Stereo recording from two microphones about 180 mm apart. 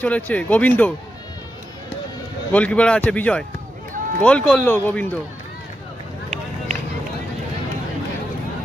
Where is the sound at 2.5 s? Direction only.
5° left (ahead or behind).